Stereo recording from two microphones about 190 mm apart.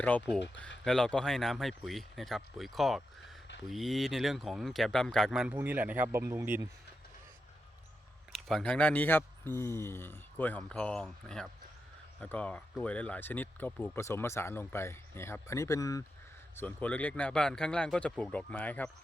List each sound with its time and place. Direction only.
0.9 s speech: 5° left (ahead or behind)
8.3 s speech: centre (ahead or behind)